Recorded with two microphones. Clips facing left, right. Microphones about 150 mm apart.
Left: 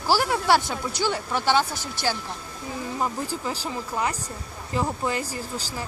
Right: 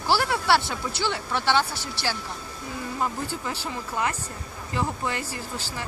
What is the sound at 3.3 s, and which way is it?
Speech, 35° left (ahead or behind).